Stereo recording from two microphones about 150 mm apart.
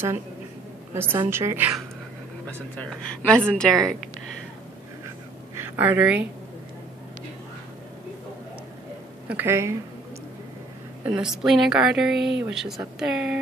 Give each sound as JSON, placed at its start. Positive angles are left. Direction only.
{"t": 0.9, "sound": "a woman's voice", "side_deg": -15}
{"t": 2.4, "sound": "a woman's voice", "side_deg": 5}
{"t": 5.6, "sound": "a woman's voice", "side_deg": -10}
{"t": 9.3, "sound": "a woman's voice", "side_deg": -15}
{"t": 11.1, "sound": "a woman's voice", "side_deg": -5}